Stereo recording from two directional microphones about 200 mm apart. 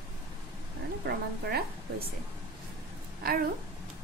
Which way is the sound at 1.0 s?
50° right (ahead or behind).